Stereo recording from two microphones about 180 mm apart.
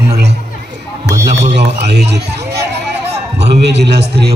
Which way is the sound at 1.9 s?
70° right (ahead or behind).